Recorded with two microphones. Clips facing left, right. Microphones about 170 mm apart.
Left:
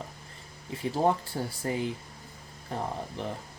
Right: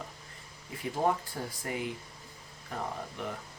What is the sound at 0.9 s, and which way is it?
Speech, 30° left (ahead or behind).